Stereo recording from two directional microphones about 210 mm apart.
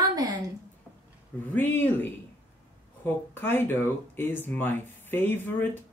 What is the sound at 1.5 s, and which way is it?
Speech, 10° left (ahead or behind).